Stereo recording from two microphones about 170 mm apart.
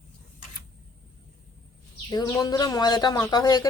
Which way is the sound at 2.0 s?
20° left (ahead or behind).